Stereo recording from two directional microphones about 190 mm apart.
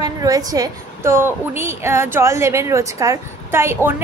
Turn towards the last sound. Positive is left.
turn(degrees=-10)  # may be behind; listen again after turning